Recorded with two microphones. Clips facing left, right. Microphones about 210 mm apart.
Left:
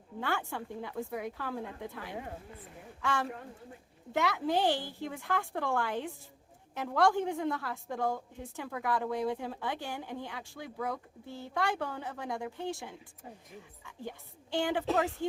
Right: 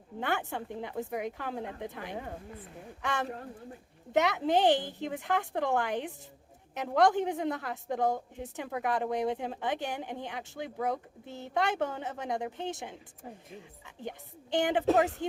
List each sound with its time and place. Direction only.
0.2 s speech: 20° right (ahead or behind)
14.0 s speech: 20° right (ahead or behind)